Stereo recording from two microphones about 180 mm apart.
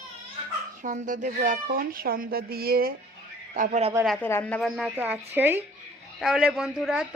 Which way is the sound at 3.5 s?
45° right (ahead or behind).